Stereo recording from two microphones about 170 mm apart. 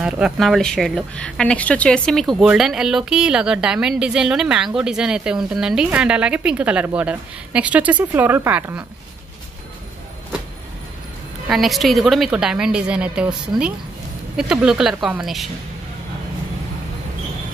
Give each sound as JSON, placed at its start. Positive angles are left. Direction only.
{"t": 0.0, "sound": "speech", "side_deg": 0}
{"t": 11.4, "sound": "speech", "side_deg": 0}